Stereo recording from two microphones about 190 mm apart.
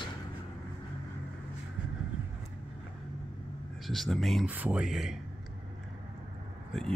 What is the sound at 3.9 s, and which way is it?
Speech, centre (ahead or behind).